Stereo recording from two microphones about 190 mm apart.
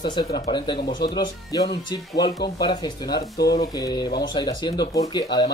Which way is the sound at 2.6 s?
25° left (ahead or behind).